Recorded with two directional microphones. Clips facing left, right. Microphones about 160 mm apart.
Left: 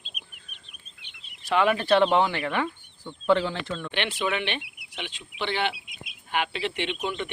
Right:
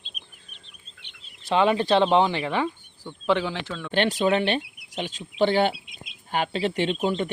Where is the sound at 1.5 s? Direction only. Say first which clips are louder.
Right 1 dB; 25° right (ahead or behind).